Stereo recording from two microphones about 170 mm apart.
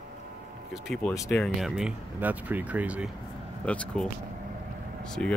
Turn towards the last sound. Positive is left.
turn(degrees=5)  # may be behind; listen again after turning